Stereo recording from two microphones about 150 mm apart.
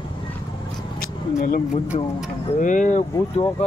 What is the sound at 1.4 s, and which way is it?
Speech, 70° left (ahead or behind).